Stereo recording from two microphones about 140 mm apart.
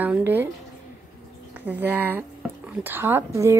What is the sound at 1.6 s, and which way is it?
A woman's voice, 15° right (ahead or behind).